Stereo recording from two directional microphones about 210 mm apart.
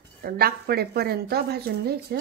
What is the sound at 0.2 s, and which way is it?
Dishes, 45° right (ahead or behind).